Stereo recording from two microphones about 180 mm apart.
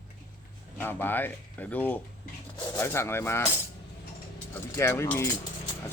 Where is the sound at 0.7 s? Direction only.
10° left (ahead or behind).